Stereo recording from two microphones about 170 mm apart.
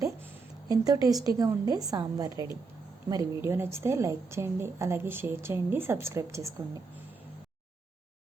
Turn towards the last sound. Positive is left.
turn(degrees=-15)  # may be behind; listen again after turning